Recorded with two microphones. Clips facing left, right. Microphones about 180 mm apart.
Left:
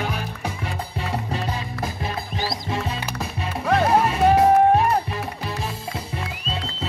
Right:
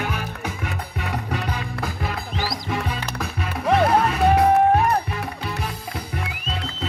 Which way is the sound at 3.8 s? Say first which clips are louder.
Left 2 dB; 25° left (ahead or behind).